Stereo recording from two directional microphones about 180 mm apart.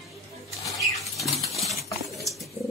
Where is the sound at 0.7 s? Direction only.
Centre (ahead or behind).